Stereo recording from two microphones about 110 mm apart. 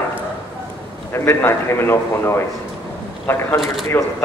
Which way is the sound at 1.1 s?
25° left (ahead or behind).